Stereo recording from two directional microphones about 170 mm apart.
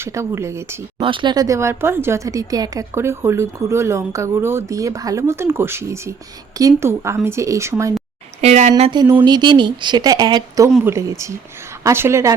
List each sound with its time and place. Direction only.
0.0 s speech: 15° right (ahead or behind)
1.0 s speech: 30° right (ahead or behind)
8.4 s speech: 40° right (ahead or behind)
8.8 s speech: 25° right (ahead or behind)